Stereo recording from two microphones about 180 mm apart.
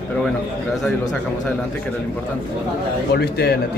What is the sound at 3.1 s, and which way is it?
Speech, 65° left (ahead or behind).